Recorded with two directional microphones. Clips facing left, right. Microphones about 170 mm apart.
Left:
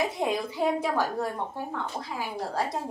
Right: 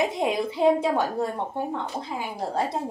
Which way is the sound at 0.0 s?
20° right (ahead or behind).